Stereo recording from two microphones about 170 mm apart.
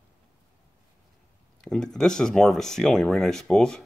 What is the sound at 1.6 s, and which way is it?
Speech, 5° left (ahead or behind).